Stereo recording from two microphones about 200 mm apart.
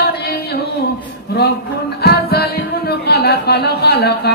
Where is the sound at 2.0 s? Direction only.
50° left (ahead or behind).